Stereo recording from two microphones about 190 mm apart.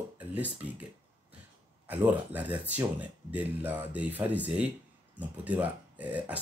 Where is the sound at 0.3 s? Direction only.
10° right (ahead or behind).